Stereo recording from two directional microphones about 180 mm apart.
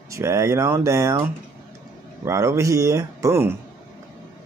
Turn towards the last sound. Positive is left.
turn(degrees=-15)  # may be behind; listen again after turning